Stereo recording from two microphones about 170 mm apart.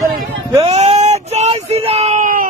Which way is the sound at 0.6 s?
35° right (ahead or behind).